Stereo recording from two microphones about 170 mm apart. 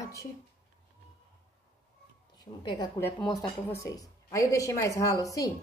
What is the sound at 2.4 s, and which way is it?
Speech, 25° left (ahead or behind).